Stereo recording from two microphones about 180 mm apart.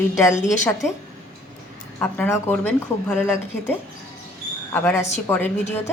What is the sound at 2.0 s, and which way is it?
Speech, 10° left (ahead or behind).